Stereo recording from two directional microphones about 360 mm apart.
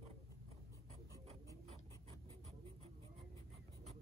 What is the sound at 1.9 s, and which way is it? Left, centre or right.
Printer, centre.